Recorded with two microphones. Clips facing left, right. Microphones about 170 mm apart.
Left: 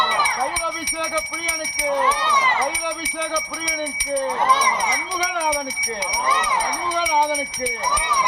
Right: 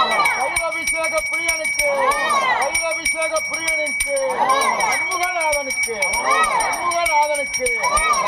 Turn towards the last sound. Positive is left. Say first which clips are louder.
# right 1 dB
turn(degrees=-5)  # may be behind; listen again after turning